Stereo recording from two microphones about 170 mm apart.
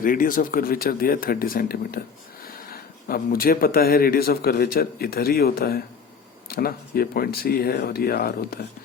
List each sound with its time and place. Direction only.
0.0 s speech: 55° left (ahead or behind)